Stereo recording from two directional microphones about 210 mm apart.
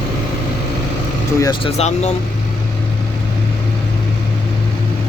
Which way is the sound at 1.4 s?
15° left (ahead or behind).